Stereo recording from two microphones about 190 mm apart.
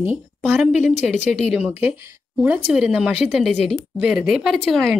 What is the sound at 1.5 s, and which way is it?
A woman's voice, 10° right (ahead or behind).